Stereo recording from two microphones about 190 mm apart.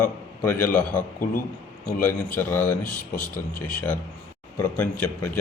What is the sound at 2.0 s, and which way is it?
Speech, 10° left (ahead or behind).